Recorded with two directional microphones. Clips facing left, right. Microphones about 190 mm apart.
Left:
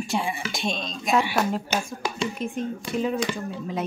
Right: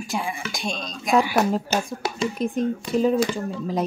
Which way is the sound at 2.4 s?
40° right (ahead or behind).